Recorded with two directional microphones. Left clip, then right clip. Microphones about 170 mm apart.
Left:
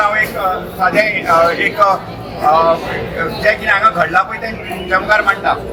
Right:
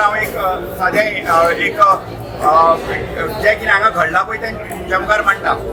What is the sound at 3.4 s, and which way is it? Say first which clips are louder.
Speech: even; 20° right (ahead or behind).